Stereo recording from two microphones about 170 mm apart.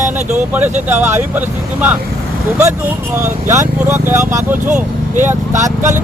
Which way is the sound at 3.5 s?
15° right (ahead or behind).